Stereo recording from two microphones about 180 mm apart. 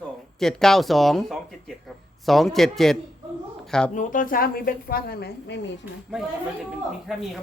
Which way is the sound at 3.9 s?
50° left (ahead or behind).